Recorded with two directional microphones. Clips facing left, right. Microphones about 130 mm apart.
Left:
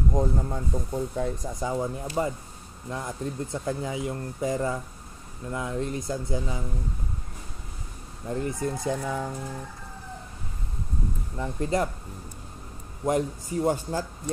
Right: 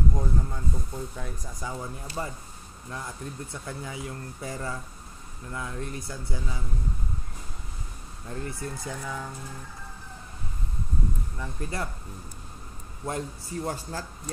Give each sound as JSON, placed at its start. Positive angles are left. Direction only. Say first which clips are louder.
{"t": 0.2, "sound": "speech", "louder": "left 4 dB", "side_deg": 30}
{"t": 8.3, "sound": "speech", "louder": "left 7 dB", "side_deg": 20}
{"t": 11.3, "sound": "speech", "louder": "left 12 dB", "side_deg": 25}
{"t": 13.0, "sound": "speech", "louder": "left 8 dB", "side_deg": 20}